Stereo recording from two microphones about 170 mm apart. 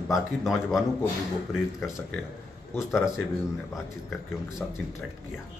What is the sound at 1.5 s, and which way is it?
Speech, 15° left (ahead or behind).